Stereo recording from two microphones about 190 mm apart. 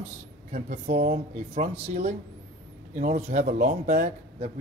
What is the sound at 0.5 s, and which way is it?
Speech, 45° right (ahead or behind).